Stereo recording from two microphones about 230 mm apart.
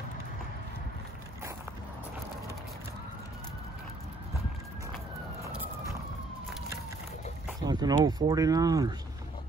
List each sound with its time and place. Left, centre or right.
7.4 s speech: centre